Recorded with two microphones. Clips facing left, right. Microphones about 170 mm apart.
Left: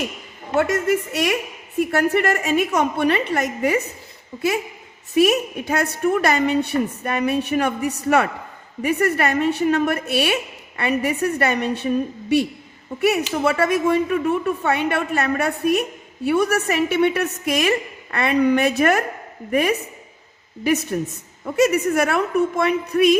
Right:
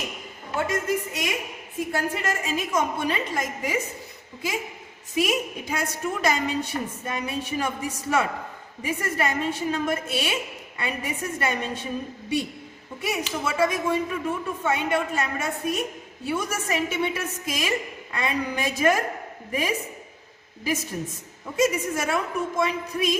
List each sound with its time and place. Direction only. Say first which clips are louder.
0.5 s a woman's voice: left 7 dB; 70° left (ahead or behind)
5.1 s a woman's voice: left 8 dB; 65° left (ahead or behind)
13.0 s a woman's voice: left 9 dB; 65° left (ahead or behind)